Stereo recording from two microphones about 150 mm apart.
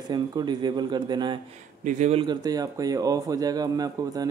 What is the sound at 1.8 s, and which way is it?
Speech, 55° right (ahead or behind).